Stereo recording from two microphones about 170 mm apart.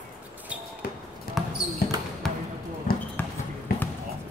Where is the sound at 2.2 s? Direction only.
5° left (ahead or behind).